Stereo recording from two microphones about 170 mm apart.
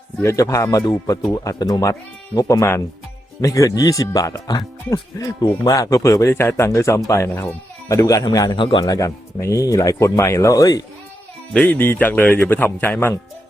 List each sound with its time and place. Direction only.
0.2 s speech: 20° left (ahead or behind)
11.5 s speech: 10° left (ahead or behind)